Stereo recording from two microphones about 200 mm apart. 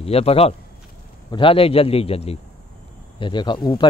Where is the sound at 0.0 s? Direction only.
30° left (ahead or behind).